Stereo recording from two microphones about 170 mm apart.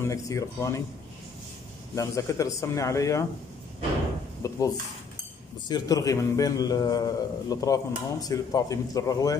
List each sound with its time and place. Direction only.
0.0 s a man's voice: 20° left (ahead or behind)
2.0 s a man's voice: 20° left (ahead or behind)
4.4 s a man's voice: 20° left (ahead or behind)